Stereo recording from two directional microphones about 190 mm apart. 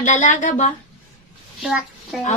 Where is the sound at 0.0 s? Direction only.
40° left (ahead or behind).